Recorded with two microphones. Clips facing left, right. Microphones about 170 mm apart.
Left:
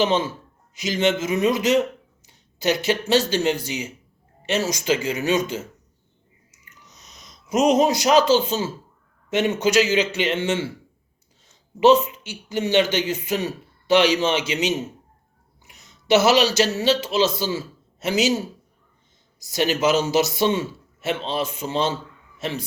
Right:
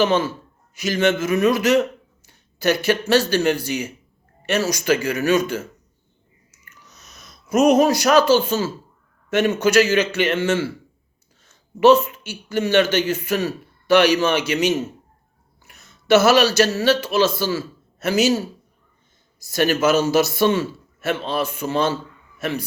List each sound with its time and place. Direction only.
0.0 s a man's voice: 20° left (ahead or behind)
6.5 s a sound: 15° left (ahead or behind)
9.3 s a man's voice: 20° left (ahead or behind)